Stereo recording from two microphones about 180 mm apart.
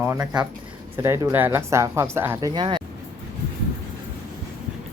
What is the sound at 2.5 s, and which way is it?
Speech, 25° right (ahead or behind).